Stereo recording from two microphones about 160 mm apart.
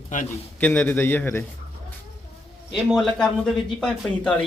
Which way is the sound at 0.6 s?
10° left (ahead or behind).